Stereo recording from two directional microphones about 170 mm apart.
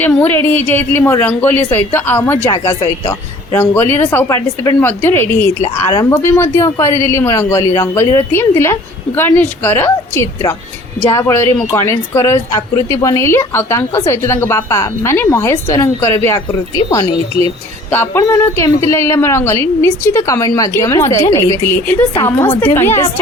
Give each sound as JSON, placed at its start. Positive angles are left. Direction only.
{"t": 0.0, "sound": "a woman's voice", "side_deg": 10}